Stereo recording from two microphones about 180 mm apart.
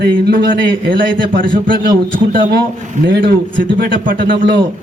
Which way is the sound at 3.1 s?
65° right (ahead or behind).